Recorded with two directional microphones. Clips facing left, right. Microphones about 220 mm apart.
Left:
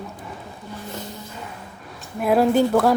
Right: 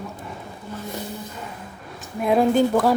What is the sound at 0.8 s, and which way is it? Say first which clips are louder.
Music: right 2 dB; 15° right (ahead or behind).